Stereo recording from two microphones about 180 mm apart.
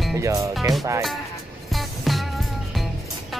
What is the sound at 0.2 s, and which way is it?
Speech, 15° right (ahead or behind).